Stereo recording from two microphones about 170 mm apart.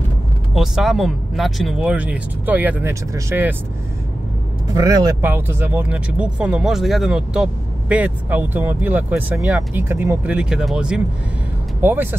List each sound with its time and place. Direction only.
0.6 s speech: centre (ahead or behind)
4.6 s speech: 20° right (ahead or behind)
5.2 s speech: 10° right (ahead or behind)